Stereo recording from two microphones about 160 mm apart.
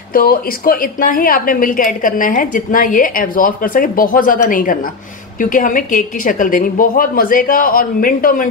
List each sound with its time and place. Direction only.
0.1 s a woman's voice: 65° left (ahead or behind)